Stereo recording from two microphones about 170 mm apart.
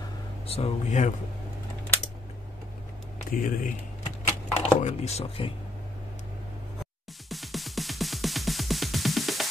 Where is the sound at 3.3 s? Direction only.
55° left (ahead or behind).